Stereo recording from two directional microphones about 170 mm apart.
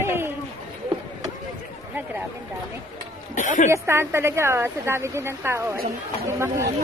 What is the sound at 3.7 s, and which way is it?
Speech, 15° right (ahead or behind).